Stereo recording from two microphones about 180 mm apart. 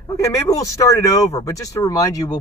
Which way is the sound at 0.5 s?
15° left (ahead or behind).